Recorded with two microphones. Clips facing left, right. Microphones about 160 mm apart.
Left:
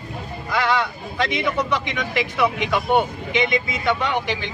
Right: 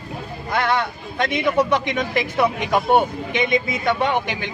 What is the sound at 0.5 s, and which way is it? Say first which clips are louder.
Speech: even; 50° right (ahead or behind).